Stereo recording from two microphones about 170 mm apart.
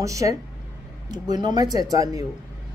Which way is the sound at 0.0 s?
20° right (ahead or behind).